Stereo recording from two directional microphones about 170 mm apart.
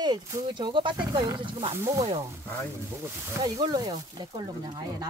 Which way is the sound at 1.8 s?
20° right (ahead or behind).